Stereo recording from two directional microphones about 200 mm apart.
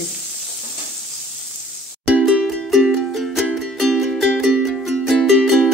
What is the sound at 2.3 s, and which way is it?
Music, centre (ahead or behind).